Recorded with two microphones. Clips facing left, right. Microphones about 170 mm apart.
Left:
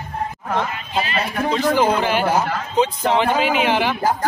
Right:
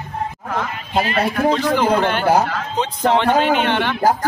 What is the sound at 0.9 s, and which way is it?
Speech, 55° right (ahead or behind).